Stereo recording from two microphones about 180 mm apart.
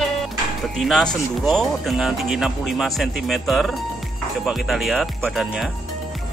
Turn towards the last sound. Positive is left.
turn(degrees=0)  # may be behind; listen again after turning